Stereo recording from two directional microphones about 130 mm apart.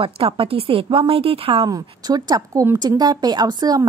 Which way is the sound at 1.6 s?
30° right (ahead or behind).